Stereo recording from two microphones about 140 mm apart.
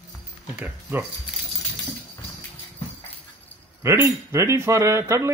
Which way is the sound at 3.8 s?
20° right (ahead or behind).